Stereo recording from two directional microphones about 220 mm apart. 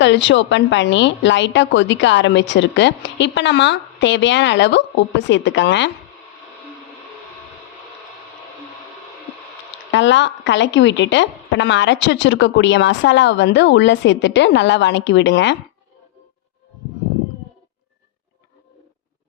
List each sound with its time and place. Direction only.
0.0 s a woman's voice: 55° left (ahead or behind)
9.9 s a woman's voice: 55° left (ahead or behind)